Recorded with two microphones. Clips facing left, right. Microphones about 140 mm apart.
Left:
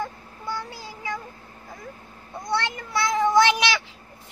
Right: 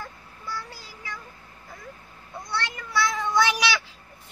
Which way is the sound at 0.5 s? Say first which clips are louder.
Left 4 dB; 20° left (ahead or behind).